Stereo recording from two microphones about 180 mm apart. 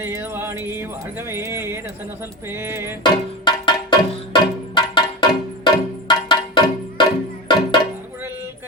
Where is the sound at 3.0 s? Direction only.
25° left (ahead or behind).